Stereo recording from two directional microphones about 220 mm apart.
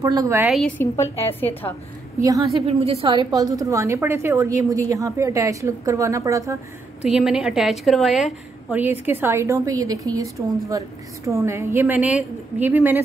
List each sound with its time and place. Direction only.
0.0 s a woman's voice: 15° right (ahead or behind)
0.5 s a woman's voice: 5° left (ahead or behind)
2.6 s a woman's voice: 25° right (ahead or behind)
7.1 s a woman's voice: 5° right (ahead or behind)